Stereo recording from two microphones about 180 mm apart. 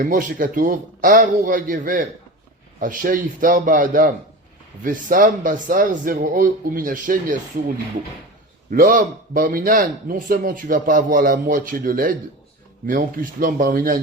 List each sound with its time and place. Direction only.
0.0 s a man's voice: 50° right (ahead or behind)
8.7 s a man's voice: 50° right (ahead or behind)